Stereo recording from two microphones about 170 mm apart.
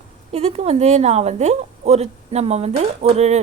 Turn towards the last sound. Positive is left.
turn(degrees=-40)  # may be behind; listen again after turning